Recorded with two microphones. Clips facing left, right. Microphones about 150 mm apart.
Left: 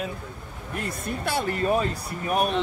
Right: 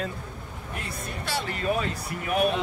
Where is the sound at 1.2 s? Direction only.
55° left (ahead or behind).